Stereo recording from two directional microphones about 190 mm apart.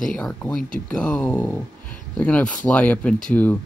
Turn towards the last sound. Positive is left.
turn(degrees=5)  # may be behind; listen again after turning